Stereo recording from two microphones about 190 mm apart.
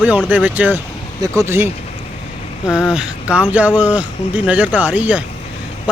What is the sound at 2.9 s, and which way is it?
Speech, 5° right (ahead or behind).